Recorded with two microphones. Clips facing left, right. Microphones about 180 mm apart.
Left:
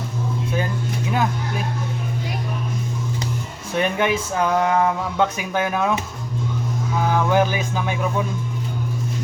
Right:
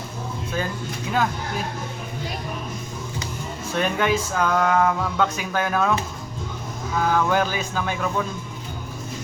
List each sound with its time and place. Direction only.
3.8 s speech: 15° left (ahead or behind)
7.1 s speech: 15° left (ahead or behind)